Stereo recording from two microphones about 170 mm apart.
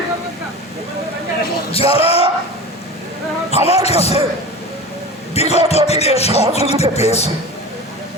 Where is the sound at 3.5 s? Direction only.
35° left (ahead or behind).